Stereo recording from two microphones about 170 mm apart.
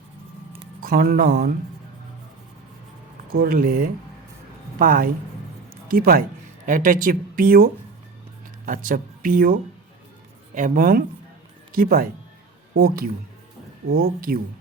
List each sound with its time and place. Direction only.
0.8 s speech: 60° right (ahead or behind)
3.3 s speech: 60° right (ahead or behind)